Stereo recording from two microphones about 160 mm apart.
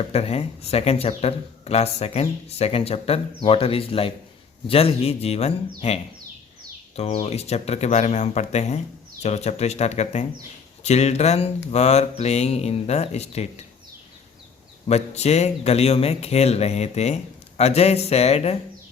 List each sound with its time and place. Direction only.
0.1 s speech: 40° left (ahead or behind)
14.8 s speech: 40° left (ahead or behind)